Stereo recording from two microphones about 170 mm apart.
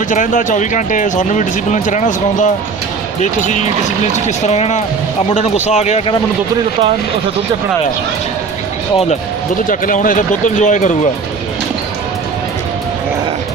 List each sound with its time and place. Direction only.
0.1 s speech: 50° left (ahead or behind)
9.6 s speech: 50° left (ahead or behind)